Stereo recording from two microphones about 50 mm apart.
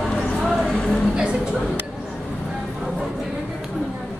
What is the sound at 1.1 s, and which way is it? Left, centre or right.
Speech, centre.